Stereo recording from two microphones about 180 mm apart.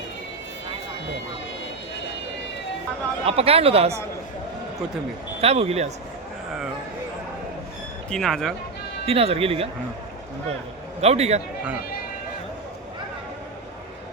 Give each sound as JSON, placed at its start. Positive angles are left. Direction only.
{"t": 3.2, "sound": "speech", "side_deg": -35}
{"t": 5.4, "sound": "speech", "side_deg": -35}
{"t": 8.1, "sound": "speech", "side_deg": 5}
{"t": 9.0, "sound": "speech", "side_deg": -30}
{"t": 11.0, "sound": "speech", "side_deg": -35}